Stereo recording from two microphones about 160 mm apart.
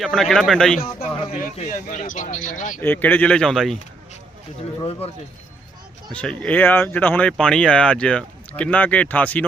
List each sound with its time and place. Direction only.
0.0 s speech: centre (ahead or behind)
0.9 s a man's voice: 55° left (ahead or behind)
2.8 s speech: 10° left (ahead or behind)
4.8 s speech: 40° left (ahead or behind)
6.1 s speech: 5° left (ahead or behind)